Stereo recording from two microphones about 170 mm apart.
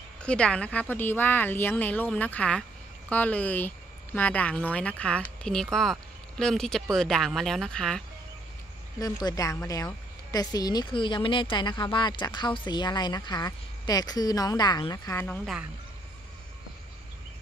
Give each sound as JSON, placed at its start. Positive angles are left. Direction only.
{"t": 0.2, "sound": "a woman's voice", "side_deg": 5}
{"t": 9.0, "sound": "a woman's voice", "side_deg": 20}